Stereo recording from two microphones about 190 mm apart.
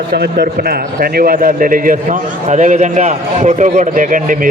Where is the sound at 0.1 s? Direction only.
55° right (ahead or behind).